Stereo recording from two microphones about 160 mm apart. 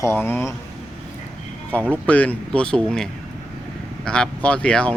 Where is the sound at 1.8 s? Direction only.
10° right (ahead or behind).